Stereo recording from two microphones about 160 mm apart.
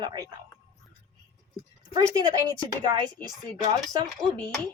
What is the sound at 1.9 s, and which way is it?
A woman's voice, 25° right (ahead or behind).